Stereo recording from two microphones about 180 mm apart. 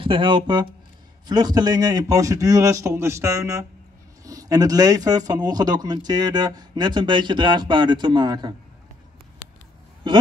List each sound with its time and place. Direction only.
0.0 s speech: 30° right (ahead or behind)